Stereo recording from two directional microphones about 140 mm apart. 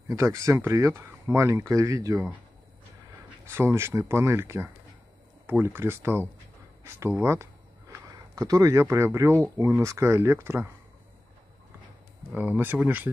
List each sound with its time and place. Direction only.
0.1 s speech: 20° right (ahead or behind)
3.4 s speech: 20° right (ahead or behind)
12.3 s speech: 10° right (ahead or behind)